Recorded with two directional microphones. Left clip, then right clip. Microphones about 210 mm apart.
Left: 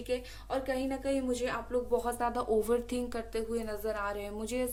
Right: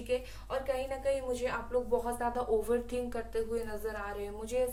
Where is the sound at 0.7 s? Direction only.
55° left (ahead or behind).